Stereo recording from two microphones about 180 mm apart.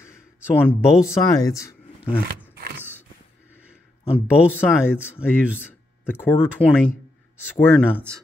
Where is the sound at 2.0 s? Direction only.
5° right (ahead or behind).